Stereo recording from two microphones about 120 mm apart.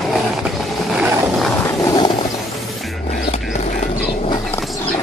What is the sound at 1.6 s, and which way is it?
Vehicle, 30° left (ahead or behind).